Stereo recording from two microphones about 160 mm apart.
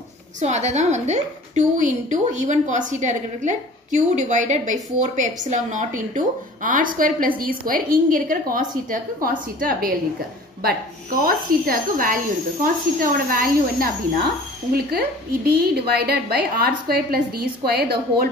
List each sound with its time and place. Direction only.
0.4 s a woman's voice: 45° right (ahead or behind); by 9.9 s 60° right (ahead or behind)
11.2 s speech: 65° right (ahead or behind)
14.7 s a woman's voice: 80° right